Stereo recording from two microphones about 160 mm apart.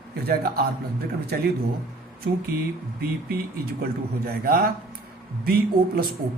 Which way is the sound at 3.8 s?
70° right (ahead or behind).